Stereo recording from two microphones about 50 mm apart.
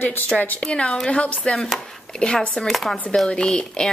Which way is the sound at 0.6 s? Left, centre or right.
Centre.